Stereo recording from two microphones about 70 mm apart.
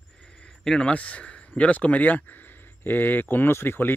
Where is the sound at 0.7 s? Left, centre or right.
Centre.